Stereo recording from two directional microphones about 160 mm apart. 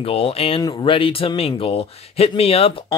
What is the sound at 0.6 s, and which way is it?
Speech, 25° left (ahead or behind).